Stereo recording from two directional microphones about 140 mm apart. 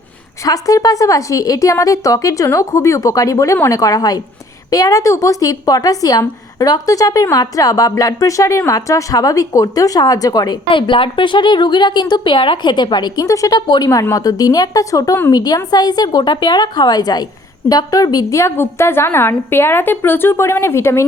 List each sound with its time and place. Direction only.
0.4 s a woman's voice: 25° left (ahead or behind)